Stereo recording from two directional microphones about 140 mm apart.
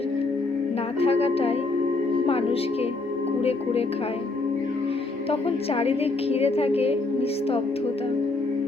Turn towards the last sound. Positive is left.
turn(degrees=45)  # may be behind; listen again after turning